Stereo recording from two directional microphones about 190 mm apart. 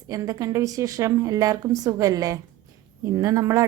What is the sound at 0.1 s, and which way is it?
Speech, 15° right (ahead or behind).